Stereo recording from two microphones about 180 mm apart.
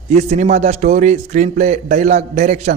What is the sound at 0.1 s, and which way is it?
A man's voice, 40° right (ahead or behind).